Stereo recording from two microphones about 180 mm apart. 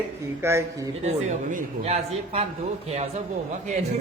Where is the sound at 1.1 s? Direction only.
45° right (ahead or behind).